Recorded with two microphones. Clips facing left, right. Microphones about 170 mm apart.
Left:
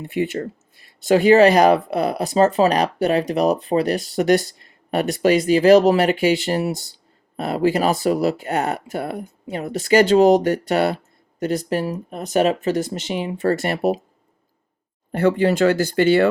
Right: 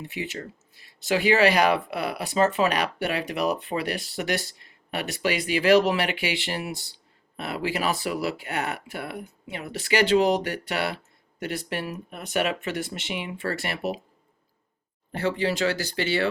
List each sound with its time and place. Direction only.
0.0 s speech: 55° left (ahead or behind)
15.1 s speech: 55° left (ahead or behind)